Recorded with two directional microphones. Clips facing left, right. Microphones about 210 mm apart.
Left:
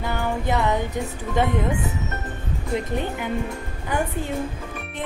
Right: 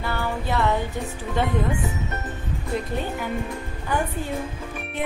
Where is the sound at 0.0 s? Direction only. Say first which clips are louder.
Left 2 dB; 15° left (ahead or behind).